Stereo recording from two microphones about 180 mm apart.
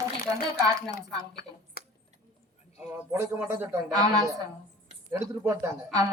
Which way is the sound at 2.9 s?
10° right (ahead or behind).